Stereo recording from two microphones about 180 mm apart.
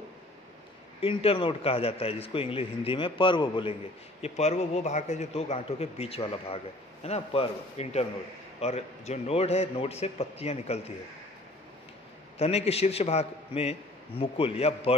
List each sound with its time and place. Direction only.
1.0 s a man's voice: 30° left (ahead or behind)
4.2 s a man's voice: 40° left (ahead or behind)
12.4 s a man's voice: 35° left (ahead or behind)